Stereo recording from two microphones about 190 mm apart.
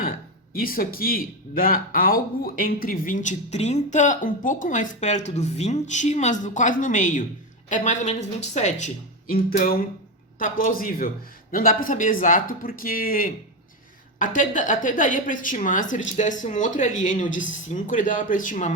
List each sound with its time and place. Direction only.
0.5 s a woman's voice: 50° left (ahead or behind)
9.3 s speech: 50° left (ahead or behind)